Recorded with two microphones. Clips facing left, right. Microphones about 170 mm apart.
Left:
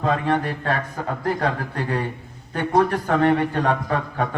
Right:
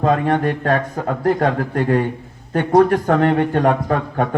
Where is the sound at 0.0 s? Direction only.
45° right (ahead or behind).